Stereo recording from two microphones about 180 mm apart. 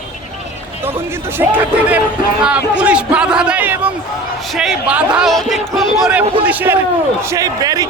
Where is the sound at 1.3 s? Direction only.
10° right (ahead or behind).